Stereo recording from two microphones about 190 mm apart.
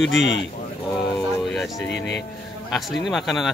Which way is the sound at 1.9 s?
65° left (ahead or behind).